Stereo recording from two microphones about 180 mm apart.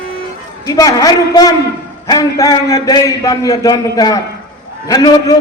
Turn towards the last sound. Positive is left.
turn(degrees=20)  # may be behind; listen again after turning